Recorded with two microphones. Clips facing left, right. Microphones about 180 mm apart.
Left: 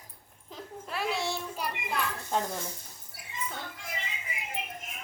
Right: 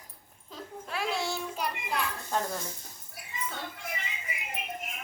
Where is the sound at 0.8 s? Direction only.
Centre (ahead or behind).